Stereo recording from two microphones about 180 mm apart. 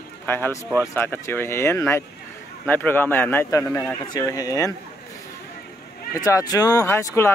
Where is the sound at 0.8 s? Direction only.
15° left (ahead or behind).